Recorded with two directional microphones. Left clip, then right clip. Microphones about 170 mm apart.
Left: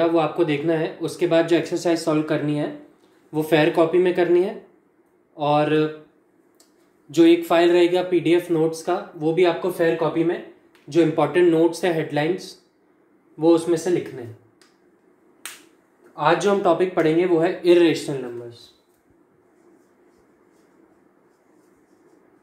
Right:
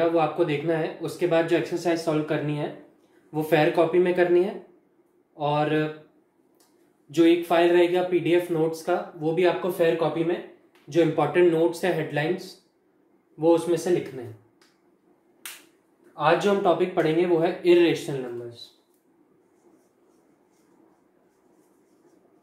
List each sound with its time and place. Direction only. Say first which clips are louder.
0.0 s speech: left 3 dB; 30° left (ahead or behind)
7.1 s speech: left 4 dB; 30° left (ahead or behind)
10.9 s speech: left 3 dB; 25° left (ahead or behind)
16.2 s speech: left 3 dB; 25° left (ahead or behind)